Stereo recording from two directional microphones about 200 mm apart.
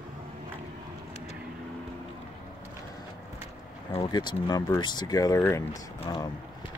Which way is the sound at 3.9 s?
25° left (ahead or behind).